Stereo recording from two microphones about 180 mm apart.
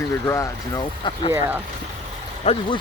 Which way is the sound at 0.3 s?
15° left (ahead or behind).